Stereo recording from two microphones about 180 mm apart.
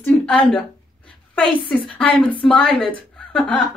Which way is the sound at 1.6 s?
30° left (ahead or behind).